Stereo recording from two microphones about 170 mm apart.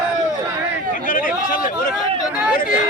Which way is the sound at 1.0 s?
55° left (ahead or behind).